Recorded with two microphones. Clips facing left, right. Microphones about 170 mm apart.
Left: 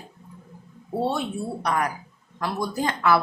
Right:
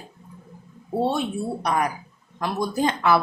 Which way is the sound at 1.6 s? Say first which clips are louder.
Right 1 dB; 20° right (ahead or behind).